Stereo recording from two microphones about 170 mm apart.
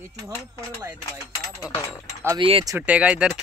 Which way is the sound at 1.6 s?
5° right (ahead or behind).